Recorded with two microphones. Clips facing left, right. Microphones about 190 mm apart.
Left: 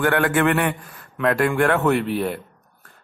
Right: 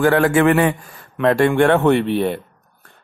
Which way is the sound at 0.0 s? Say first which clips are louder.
Right 5 dB; 25° right (ahead or behind).